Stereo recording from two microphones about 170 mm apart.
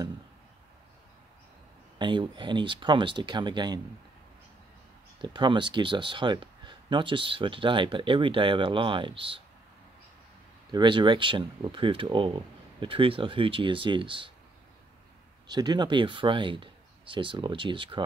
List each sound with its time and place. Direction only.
2.0 s speech: 30° right (ahead or behind)
5.2 s speech: 25° right (ahead or behind)
10.7 s speech: 30° right (ahead or behind)
15.4 s speech: 25° right (ahead or behind)